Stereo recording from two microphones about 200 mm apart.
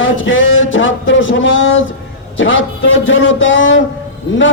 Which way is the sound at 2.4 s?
70° left (ahead or behind).